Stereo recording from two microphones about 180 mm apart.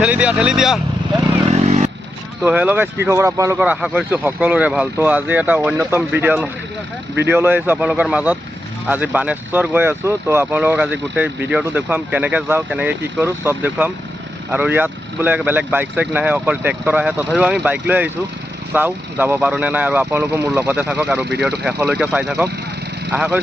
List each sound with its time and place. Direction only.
0.0 s speech: 10° right (ahead or behind)
1.5 s vehicle: 35° right (ahead or behind)
2.4 s speech: 10° right (ahead or behind)